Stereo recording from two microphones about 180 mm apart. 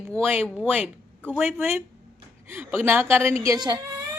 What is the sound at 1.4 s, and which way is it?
A woman's voice, 10° right (ahead or behind).